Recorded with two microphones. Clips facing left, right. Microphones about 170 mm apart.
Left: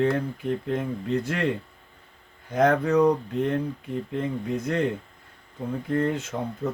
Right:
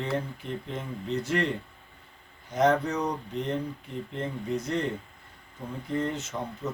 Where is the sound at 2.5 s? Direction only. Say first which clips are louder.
Left 4 dB; 55° left (ahead or behind).